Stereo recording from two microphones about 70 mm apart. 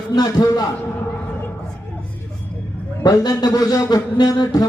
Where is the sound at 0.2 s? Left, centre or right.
Left.